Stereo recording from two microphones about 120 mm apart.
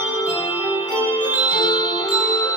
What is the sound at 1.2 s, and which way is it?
Music, 40° left (ahead or behind).